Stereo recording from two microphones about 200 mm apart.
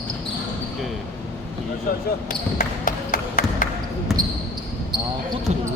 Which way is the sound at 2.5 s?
40° left (ahead or behind).